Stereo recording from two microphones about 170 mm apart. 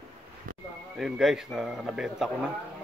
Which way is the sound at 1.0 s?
Centre (ahead or behind).